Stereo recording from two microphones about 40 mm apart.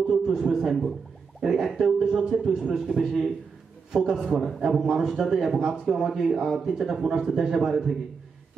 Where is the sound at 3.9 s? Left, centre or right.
Centre.